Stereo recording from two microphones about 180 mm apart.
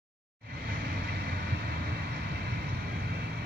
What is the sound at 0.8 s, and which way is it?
Vehicle, 60° right (ahead or behind).